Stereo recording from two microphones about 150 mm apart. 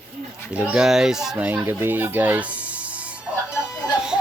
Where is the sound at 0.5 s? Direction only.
5° right (ahead or behind).